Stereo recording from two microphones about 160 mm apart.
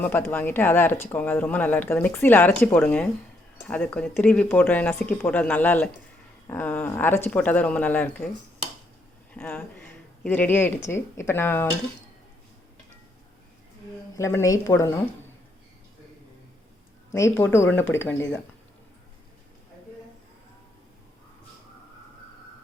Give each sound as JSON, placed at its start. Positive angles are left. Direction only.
{"t": 0.0, "sound": "speech", "side_deg": 10}
{"t": 9.3, "sound": "speech", "side_deg": 10}
{"t": 14.2, "sound": "a woman's voice", "side_deg": 20}
{"t": 17.1, "sound": "speech", "side_deg": 20}